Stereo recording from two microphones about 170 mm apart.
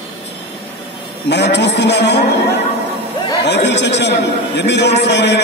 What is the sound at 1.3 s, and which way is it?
Speech, 90° left.